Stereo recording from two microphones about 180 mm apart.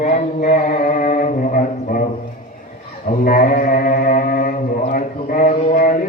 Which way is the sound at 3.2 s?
50° left (ahead or behind).